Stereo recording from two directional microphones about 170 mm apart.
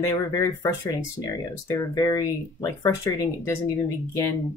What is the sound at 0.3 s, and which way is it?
Speech, 20° left (ahead or behind).